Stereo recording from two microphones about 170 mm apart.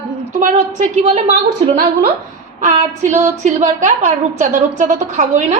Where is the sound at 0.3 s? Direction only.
45° right (ahead or behind).